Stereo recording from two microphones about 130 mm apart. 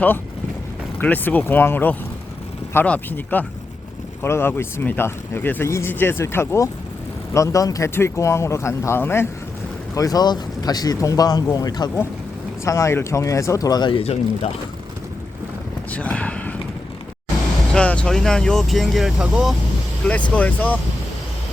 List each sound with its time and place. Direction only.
0.9 s speech: 15° left (ahead or behind); by 14.0 s 35° left (ahead or behind)
14.0 s speech: 50° left (ahead or behind)
15.9 s a sound: 10° left (ahead or behind)
17.7 s speech: 10° left (ahead or behind)
20.3 s speech: 10° left (ahead or behind)